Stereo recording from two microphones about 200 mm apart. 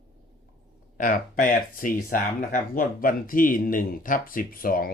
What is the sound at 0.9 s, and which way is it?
Speech, 45° left (ahead or behind).